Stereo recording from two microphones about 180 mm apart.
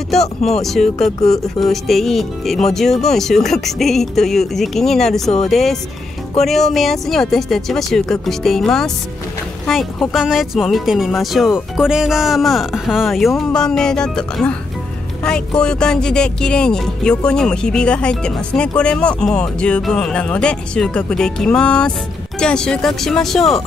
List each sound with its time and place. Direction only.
0.5 s speech: centre (ahead or behind)